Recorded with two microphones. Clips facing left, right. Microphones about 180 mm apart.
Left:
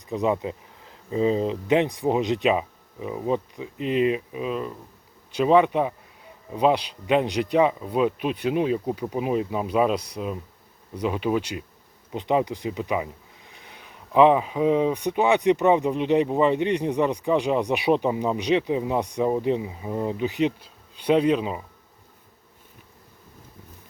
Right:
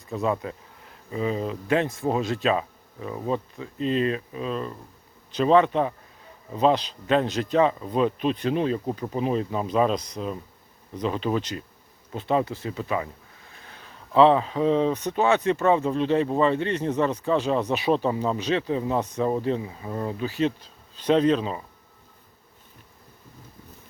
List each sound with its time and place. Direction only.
0.1 s speech: 20° left (ahead or behind)